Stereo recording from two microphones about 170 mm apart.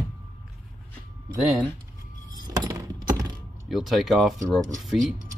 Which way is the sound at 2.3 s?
25° right (ahead or behind).